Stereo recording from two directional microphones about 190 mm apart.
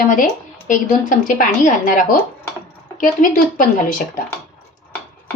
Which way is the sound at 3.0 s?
45° left (ahead or behind).